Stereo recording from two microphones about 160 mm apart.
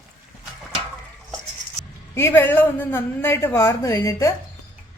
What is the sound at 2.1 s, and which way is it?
A man's voice, 15° left (ahead or behind).